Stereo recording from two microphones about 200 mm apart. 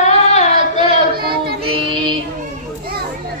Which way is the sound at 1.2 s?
50° right (ahead or behind).